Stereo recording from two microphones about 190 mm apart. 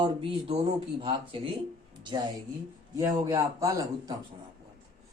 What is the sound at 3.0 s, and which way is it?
A man's voice, 15° right (ahead or behind).